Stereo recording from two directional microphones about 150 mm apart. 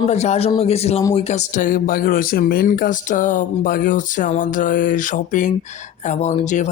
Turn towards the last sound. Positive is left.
turn(degrees=55)  # may be behind; listen again after turning